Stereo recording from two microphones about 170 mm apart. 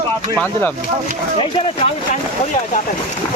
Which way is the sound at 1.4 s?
30° left (ahead or behind).